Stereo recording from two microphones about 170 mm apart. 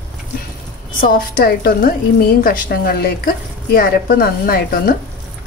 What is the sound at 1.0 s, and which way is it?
A woman's voice, 60° left (ahead or behind).